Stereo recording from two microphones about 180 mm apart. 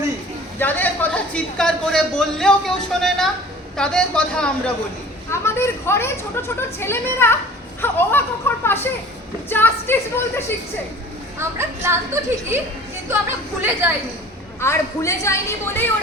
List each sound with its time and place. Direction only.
0.6 s speech: 10° left (ahead or behind)
5.3 s a woman's voice: 15° left (ahead or behind)
11.3 s a woman's voice: 15° right (ahead or behind)
13.6 s a woman's voice: 10° right (ahead or behind)
14.6 s a woman's voice: 15° left (ahead or behind)